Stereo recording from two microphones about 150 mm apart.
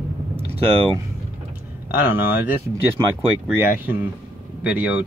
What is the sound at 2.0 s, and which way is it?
Speech, 15° right (ahead or behind).